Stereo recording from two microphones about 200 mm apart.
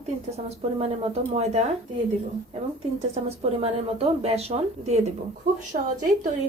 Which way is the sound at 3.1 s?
30° right (ahead or behind).